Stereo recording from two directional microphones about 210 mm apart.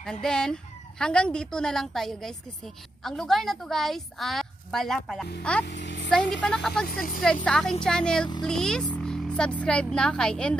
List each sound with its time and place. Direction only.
0.0 s a woman's voice: 5° left (ahead or behind)
5.7 s a sound: 60° left (ahead or behind)
6.4 s a woman's voice: 5° left (ahead or behind)
6.9 s speech: 40° left (ahead or behind)
7.4 s a woman's voice: 5° left (ahead or behind)